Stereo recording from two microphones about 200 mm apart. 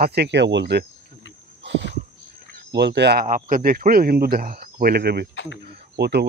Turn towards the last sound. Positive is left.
turn(degrees=-55)  # may be behind; listen again after turning